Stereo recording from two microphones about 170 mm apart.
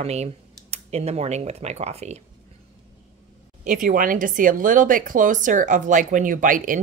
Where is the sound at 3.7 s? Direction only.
50° right (ahead or behind).